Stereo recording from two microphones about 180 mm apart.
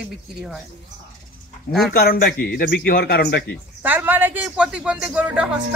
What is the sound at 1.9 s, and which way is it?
A man's voice, 55° left (ahead or behind).